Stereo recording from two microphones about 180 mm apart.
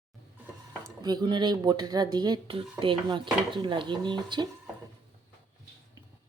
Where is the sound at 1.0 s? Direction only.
25° right (ahead or behind).